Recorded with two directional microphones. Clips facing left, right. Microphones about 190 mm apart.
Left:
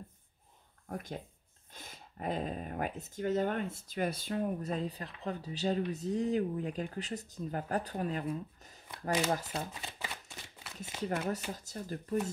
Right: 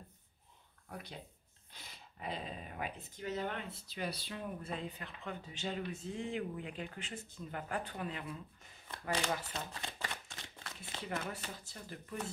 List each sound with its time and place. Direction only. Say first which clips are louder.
0.8 s speech: left 7 dB; 45° left (ahead or behind)
9.8 s shuffling cards: even; 10° left (ahead or behind)
11.0 s speech: left 7 dB; 40° left (ahead or behind)